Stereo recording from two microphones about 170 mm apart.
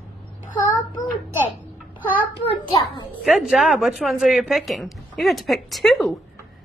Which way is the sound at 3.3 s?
Centre (ahead or behind).